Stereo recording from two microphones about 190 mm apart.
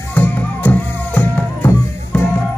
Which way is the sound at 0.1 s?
10° left (ahead or behind).